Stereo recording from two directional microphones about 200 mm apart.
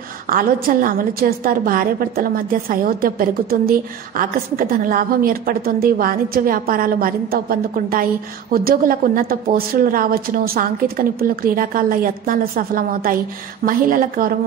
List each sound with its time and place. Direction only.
0.3 s a woman's voice: 45° right (ahead or behind)